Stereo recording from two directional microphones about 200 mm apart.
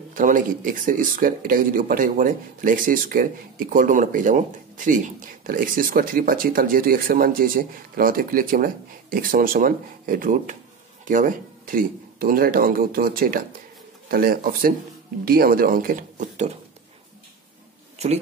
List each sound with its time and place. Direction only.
0.1 s speech: 40° right (ahead or behind)
17.9 s speech: 30° right (ahead or behind)